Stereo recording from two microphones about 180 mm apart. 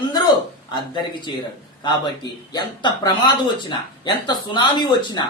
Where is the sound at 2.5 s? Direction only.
25° left (ahead or behind).